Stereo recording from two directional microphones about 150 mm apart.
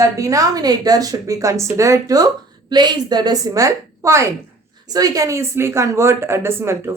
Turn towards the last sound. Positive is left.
turn(degrees=-15)  # may be behind; listen again after turning